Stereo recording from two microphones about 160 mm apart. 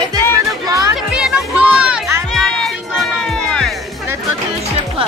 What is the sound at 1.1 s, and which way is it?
Music, 5° right (ahead or behind).